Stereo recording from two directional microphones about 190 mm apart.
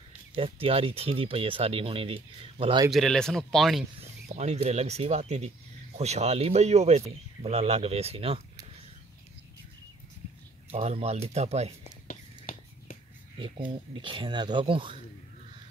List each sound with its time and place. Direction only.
0.4 s speech: 30° right (ahead or behind)
2.9 s speech: centre (ahead or behind)
4.3 s speech: 35° right (ahead or behind)
10.7 s speech: 35° right (ahead or behind)
12.1 s whispering: 45° left (ahead or behind)
13.9 s speech: 25° right (ahead or behind)